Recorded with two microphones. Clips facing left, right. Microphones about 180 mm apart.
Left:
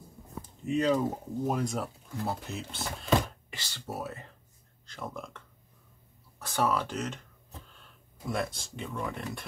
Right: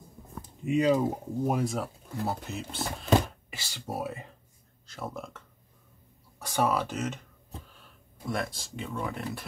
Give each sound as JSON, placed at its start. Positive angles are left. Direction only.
{"t": 0.7, "sound": "speech", "side_deg": -10}
{"t": 6.4, "sound": "speech", "side_deg": -10}
{"t": 8.3, "sound": "speech", "side_deg": 0}